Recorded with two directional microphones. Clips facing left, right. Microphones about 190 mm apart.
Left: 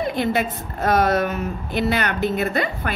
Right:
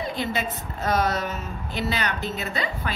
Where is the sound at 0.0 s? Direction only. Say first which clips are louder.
Left 6 dB; 55° left (ahead or behind).